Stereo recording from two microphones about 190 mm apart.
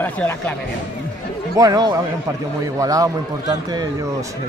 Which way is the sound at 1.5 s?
20° right (ahead or behind).